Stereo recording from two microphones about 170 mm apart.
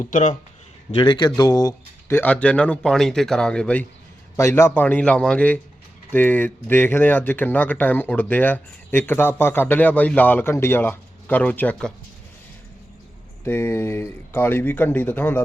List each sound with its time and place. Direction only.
0.0 s speech: 45° left (ahead or behind)
0.9 s a man's voice: 30° left (ahead or behind); by 11.9 s 5° left (ahead or behind)
13.4 s speech: 15° left (ahead or behind)